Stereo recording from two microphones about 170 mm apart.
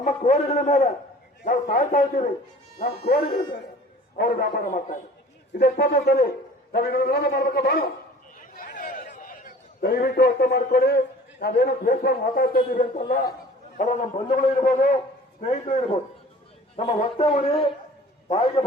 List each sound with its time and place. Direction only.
0.0 s a man's voice: 40° left (ahead or behind)
5.5 s a man's voice: 65° left (ahead or behind)
8.4 s a man's voice: 50° left (ahead or behind); by 18.6 s 35° left (ahead or behind)